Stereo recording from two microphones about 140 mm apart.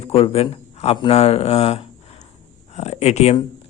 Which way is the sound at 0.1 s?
45° left (ahead or behind).